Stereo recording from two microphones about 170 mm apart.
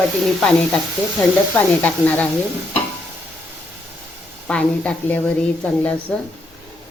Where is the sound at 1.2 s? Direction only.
10° left (ahead or behind).